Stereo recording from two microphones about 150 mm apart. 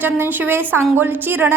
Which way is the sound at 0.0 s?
15° right (ahead or behind).